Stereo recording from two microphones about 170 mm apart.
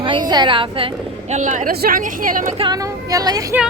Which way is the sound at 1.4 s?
45° right (ahead or behind).